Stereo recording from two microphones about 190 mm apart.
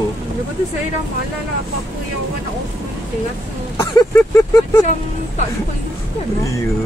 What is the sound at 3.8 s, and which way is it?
Vehicle, 15° left (ahead or behind).